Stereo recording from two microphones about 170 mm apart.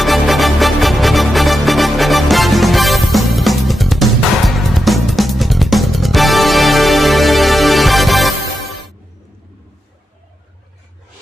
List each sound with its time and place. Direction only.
0.0 s music: centre (ahead or behind)